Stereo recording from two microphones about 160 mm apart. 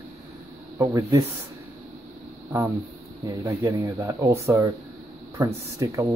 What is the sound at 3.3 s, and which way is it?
Speech, 20° right (ahead or behind).